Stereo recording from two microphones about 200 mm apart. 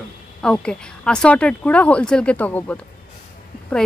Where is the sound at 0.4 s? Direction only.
5° left (ahead or behind).